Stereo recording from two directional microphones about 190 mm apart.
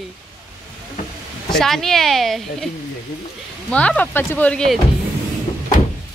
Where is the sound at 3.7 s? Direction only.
5° left (ahead or behind).